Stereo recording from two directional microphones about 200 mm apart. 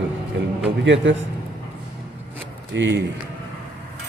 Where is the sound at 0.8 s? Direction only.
65° right (ahead or behind).